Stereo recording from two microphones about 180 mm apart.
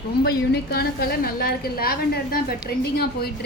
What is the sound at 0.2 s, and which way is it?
A woman's voice, 60° left (ahead or behind).